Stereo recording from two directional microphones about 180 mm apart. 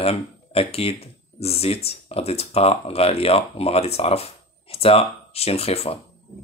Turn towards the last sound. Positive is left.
turn(degrees=35)  # may be behind; listen again after turning